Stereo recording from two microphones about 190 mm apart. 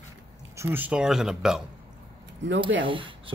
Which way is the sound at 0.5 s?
15° right (ahead or behind).